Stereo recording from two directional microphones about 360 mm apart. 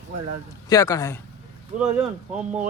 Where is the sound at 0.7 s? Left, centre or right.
Centre.